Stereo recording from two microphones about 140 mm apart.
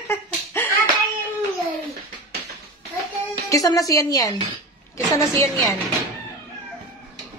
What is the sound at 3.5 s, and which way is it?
Speech, 25° left (ahead or behind).